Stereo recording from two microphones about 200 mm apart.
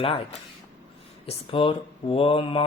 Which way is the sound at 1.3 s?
25° left (ahead or behind).